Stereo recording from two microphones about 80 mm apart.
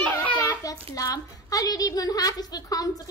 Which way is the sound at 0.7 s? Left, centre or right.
Left.